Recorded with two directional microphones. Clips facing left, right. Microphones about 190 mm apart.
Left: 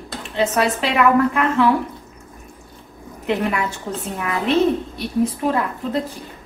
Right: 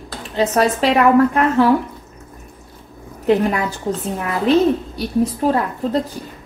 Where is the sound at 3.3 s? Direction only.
35° right (ahead or behind).